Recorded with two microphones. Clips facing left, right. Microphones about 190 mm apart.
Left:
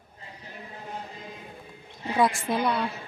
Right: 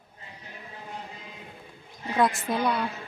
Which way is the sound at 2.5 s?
5° left (ahead or behind).